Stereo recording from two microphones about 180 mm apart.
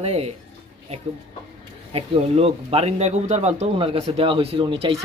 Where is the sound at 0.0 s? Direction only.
35° right (ahead or behind).